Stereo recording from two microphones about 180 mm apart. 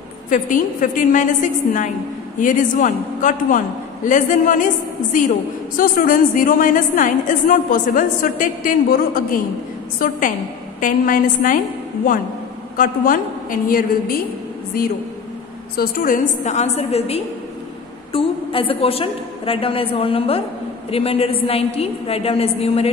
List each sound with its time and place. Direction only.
0.3 s a woman's voice: 45° left (ahead or behind)
5.8 s a woman's voice: 50° left (ahead or behind)
12.7 s a woman's voice: 50° left (ahead or behind); by 22.8 s 35° left (ahead or behind)